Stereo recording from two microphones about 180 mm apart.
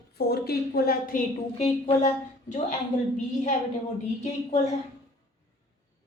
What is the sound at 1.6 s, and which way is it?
A woman's voice, 40° left (ahead or behind).